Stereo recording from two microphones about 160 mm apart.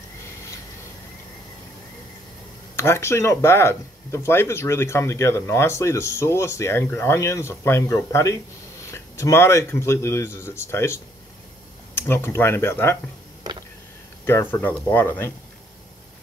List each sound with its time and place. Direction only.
2.7 s speech: 15° left (ahead or behind)
14.2 s speech: 15° left (ahead or behind)